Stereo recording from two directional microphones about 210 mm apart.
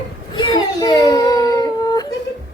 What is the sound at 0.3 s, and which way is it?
Baby cry, 20° left (ahead or behind).